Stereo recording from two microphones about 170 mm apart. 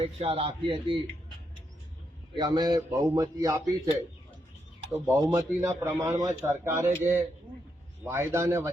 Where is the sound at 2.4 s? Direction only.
25° right (ahead or behind).